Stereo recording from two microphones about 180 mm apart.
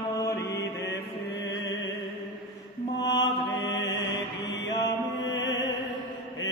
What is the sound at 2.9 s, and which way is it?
Mantra, 75° left (ahead or behind).